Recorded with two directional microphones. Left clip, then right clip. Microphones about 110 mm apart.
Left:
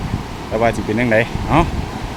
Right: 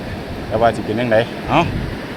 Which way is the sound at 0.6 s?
75° left (ahead or behind).